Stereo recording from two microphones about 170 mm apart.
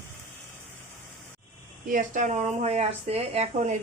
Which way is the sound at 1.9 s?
50° right (ahead or behind).